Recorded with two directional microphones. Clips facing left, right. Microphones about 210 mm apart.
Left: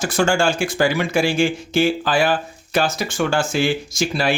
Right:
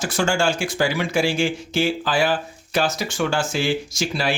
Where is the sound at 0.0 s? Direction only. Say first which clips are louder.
Left 3 dB; 50° left (ahead or behind).